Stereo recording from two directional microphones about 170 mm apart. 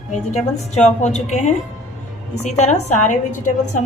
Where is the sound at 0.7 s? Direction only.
45° left (ahead or behind).